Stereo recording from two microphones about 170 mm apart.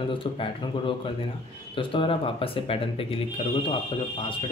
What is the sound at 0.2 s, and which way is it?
A man's voice, 30° left (ahead or behind).